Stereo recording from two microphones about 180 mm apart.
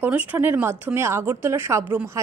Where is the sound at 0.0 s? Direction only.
10° right (ahead or behind).